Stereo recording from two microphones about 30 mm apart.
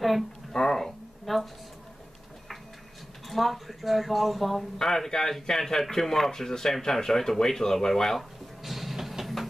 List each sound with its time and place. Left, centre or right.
0.5 s music: centre
0.8 s a sound: centre
3.3 s speech: centre
4.7 s speech: centre
8.2 s music: centre
9.2 s a sound: centre